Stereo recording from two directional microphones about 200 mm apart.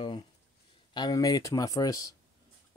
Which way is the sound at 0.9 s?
20° left (ahead or behind).